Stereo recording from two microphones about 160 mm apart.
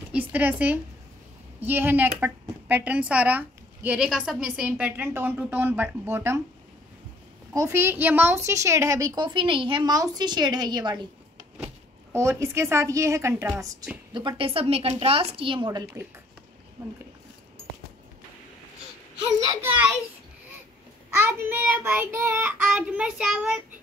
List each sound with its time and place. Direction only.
0.1 s a woman's voice: 10° right (ahead or behind)
7.5 s a woman's voice: 15° right (ahead or behind)
12.1 s a woman's voice: 15° right (ahead or behind)
14.1 s a woman's voice: 30° right (ahead or behind)
21.2 s a woman's voice: 10° right (ahead or behind)